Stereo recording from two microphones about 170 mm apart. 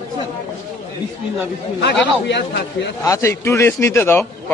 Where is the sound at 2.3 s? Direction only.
85° left.